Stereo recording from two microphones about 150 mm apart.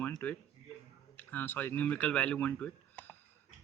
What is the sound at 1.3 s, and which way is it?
Speech, 10° left (ahead or behind).